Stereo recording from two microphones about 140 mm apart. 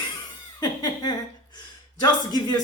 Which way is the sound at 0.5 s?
25° left (ahead or behind).